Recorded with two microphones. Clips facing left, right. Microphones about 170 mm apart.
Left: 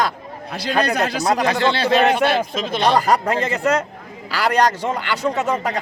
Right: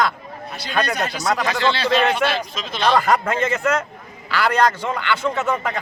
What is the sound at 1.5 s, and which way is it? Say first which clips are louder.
A man's voice: left 2 dB; 55° left (ahead or behind).